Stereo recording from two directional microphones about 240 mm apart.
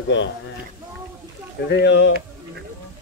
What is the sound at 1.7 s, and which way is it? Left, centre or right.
Speech, left.